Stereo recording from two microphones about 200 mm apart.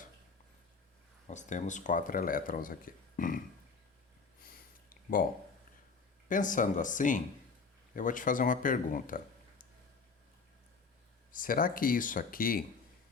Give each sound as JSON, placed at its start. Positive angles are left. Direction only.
{"t": 1.3, "sound": "speech", "side_deg": 35}
{"t": 4.9, "sound": "a sound", "side_deg": 45}
{"t": 6.2, "sound": "speech", "side_deg": 40}
{"t": 11.3, "sound": "speech", "side_deg": 45}